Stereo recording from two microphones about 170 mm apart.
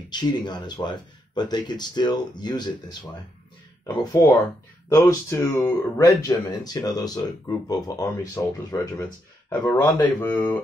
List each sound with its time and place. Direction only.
0.1 s speech: 25° left (ahead or behind)